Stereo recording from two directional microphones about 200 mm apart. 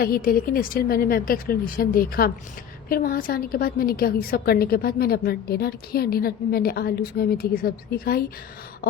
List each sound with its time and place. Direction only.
0.0 s a woman's voice: 45° left (ahead or behind)